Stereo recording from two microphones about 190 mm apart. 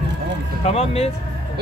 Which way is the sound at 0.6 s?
35° left (ahead or behind).